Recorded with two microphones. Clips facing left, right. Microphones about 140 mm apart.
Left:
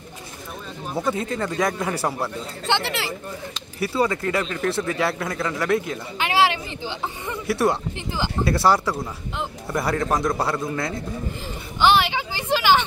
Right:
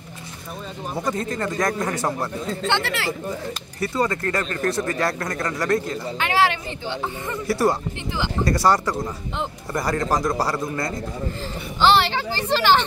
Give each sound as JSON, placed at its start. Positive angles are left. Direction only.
{"t": 0.9, "sound": "speech", "side_deg": 5}
{"t": 2.7, "sound": "speech", "side_deg": 25}
{"t": 3.8, "sound": "speech", "side_deg": 5}
{"t": 7.4, "sound": "speech", "side_deg": 0}
{"t": 11.8, "sound": "a sound", "side_deg": 15}